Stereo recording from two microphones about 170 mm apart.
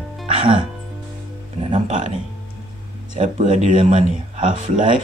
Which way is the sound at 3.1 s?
45° right (ahead or behind).